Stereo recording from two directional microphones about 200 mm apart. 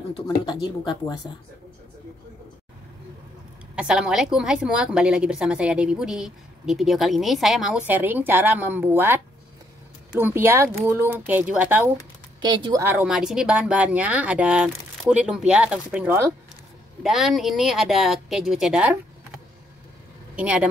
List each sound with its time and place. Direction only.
0.1 s speech: 25° left (ahead or behind)
3.7 s a woman's voice: 5° right (ahead or behind)
12.4 s speech: 20° right (ahead or behind)
12.8 s a woman's voice: 5° right (ahead or behind)